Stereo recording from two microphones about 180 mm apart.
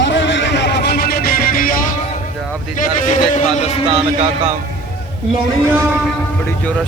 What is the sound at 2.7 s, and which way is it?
A man's voice, 45° left (ahead or behind).